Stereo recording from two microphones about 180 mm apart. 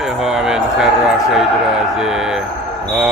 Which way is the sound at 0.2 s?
5° right (ahead or behind).